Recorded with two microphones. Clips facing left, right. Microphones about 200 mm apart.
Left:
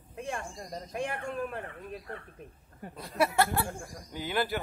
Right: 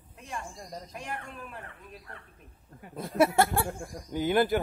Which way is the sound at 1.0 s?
50° left (ahead or behind).